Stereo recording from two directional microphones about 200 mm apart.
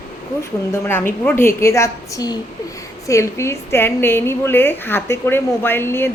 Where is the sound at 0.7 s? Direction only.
10° left (ahead or behind).